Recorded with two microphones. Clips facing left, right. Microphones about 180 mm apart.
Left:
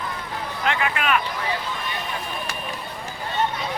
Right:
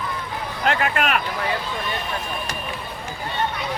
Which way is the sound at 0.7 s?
45° right (ahead or behind).